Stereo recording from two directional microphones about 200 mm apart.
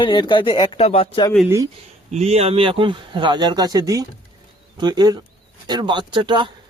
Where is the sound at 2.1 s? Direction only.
35° right (ahead or behind).